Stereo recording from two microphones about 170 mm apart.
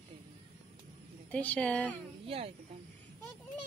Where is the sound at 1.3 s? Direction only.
10° left (ahead or behind).